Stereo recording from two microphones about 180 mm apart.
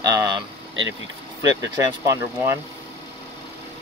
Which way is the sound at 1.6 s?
15° right (ahead or behind).